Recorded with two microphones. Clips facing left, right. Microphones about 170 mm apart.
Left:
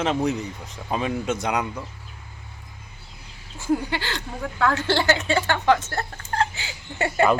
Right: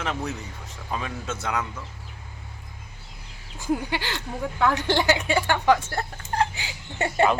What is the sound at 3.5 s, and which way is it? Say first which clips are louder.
Speech: left 2 dB; 15° right (ahead or behind).